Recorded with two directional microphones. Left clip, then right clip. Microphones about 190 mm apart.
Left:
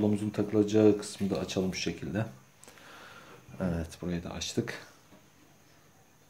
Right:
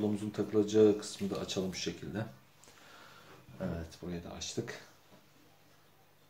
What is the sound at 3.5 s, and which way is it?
Speech, 55° left (ahead or behind).